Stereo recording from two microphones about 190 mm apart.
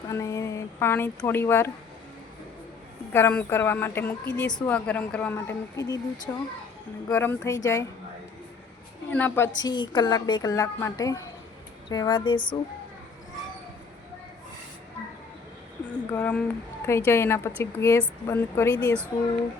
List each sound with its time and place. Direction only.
0.1 s speech: 15° left (ahead or behind)
3.1 s a woman's voice: 10° left (ahead or behind)
9.0 s a woman's voice: 10° left (ahead or behind); by 12.5 s 25° left (ahead or behind)
15.9 s a woman's voice: 5° left (ahead or behind)